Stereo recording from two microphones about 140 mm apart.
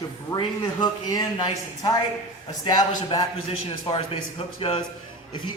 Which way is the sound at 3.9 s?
40° left (ahead or behind).